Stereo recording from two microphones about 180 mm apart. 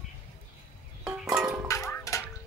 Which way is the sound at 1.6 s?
15° left (ahead or behind).